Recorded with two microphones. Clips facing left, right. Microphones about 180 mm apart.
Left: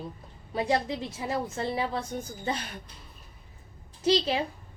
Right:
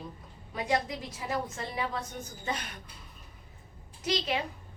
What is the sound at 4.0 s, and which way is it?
Speech, 30° left (ahead or behind).